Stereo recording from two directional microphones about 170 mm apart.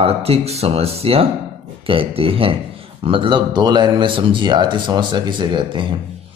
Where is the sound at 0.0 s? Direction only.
35° right (ahead or behind).